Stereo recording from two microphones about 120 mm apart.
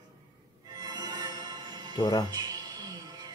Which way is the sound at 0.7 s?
30° right (ahead or behind).